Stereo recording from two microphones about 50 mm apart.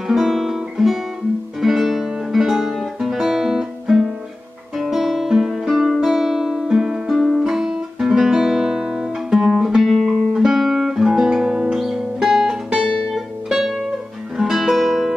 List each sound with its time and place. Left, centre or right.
0.1 s guitar: centre
1.6 s music: centre
7.2 s guitar: centre
9.8 s music: centre
10.3 s guitar: centre
11.2 s music: centre
11.8 s music: centre